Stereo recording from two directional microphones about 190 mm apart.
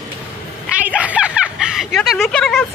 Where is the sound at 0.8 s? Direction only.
5° right (ahead or behind).